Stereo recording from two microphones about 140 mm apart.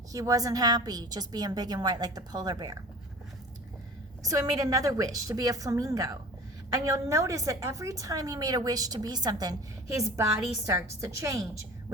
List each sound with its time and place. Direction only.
0.1 s a woman's voice: 25° right (ahead or behind)
4.2 s a woman's voice: 25° right (ahead or behind)